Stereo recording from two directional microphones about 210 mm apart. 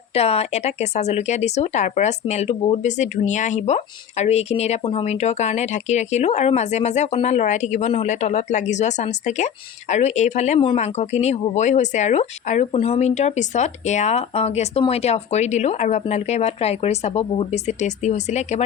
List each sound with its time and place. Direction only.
0.1 s speech: 30° left (ahead or behind)